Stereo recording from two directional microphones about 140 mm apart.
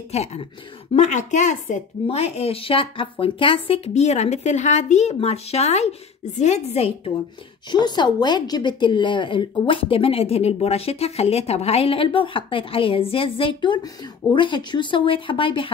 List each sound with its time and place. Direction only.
0.1 s speech: 50° left (ahead or behind)
7.7 s a woman's voice: 30° left (ahead or behind)